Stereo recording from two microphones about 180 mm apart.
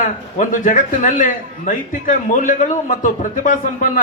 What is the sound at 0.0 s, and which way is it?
A man's voice, 50° left (ahead or behind).